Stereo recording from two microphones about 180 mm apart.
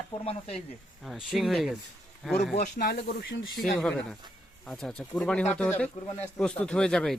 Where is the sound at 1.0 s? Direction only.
Centre (ahead or behind).